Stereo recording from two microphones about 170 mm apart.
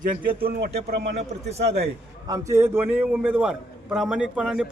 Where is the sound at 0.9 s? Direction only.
75° right (ahead or behind).